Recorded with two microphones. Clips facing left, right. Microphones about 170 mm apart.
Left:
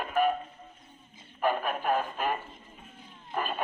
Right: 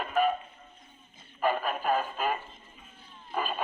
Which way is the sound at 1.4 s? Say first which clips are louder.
Even; centre (ahead or behind).